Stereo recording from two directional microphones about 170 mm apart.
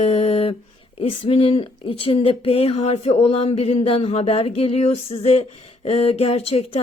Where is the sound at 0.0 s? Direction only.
35° left (ahead or behind).